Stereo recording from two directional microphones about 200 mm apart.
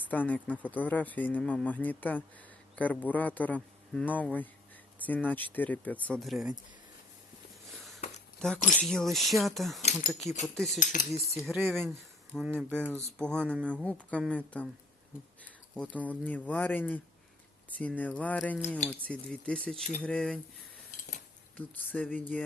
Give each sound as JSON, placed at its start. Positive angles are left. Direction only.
{"t": 0.1, "sound": "speech", "side_deg": 10}
{"t": 7.7, "sound": "a sound", "side_deg": 0}
{"t": 8.4, "sound": "speech", "side_deg": 5}
{"t": 10.9, "sound": "cutlery", "side_deg": 40}
{"t": 11.4, "sound": "speech", "side_deg": 0}
{"t": 15.7, "sound": "speech", "side_deg": 5}
{"t": 21.6, "sound": "speech", "side_deg": 10}